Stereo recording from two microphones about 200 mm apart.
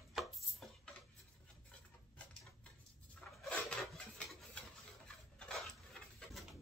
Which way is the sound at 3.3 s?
Centre (ahead or behind).